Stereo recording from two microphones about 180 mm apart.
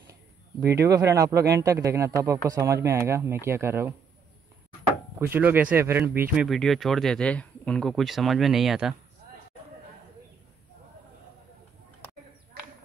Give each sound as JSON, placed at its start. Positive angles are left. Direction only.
{"t": 0.8, "sound": "speech", "side_deg": -20}
{"t": 5.2, "sound": "speech", "side_deg": -10}
{"t": 6.3, "sound": "speech", "side_deg": 0}